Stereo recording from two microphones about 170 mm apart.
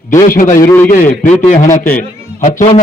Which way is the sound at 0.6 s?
15° left (ahead or behind).